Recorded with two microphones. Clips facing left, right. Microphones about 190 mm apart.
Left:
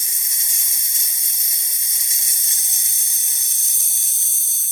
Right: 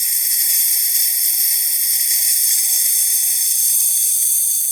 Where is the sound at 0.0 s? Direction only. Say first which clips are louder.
Right 1 dB; 15° right (ahead or behind).